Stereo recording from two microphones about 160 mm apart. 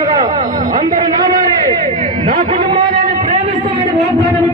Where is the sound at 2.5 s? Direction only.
30° right (ahead or behind).